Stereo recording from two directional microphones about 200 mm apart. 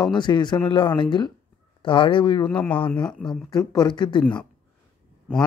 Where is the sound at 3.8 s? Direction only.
25° left (ahead or behind).